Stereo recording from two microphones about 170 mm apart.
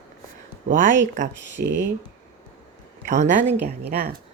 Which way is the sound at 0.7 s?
50° right (ahead or behind).